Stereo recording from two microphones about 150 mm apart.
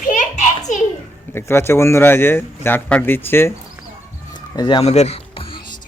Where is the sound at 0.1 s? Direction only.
55° left (ahead or behind).